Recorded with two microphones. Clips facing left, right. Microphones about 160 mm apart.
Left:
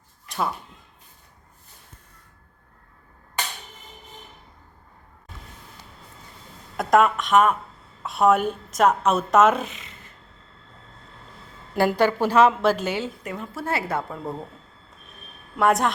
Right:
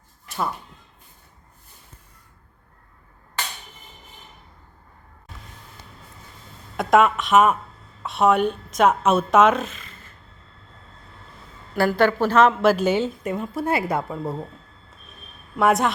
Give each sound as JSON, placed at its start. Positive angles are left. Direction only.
{"t": 6.7, "sound": "a woman's voice", "side_deg": 0}
{"t": 11.7, "sound": "a woman's voice", "side_deg": 20}
{"t": 12.6, "sound": "a woman's voice", "side_deg": -15}
{"t": 14.1, "sound": "a woman's voice", "side_deg": 0}
{"t": 15.5, "sound": "a woman's voice", "side_deg": 0}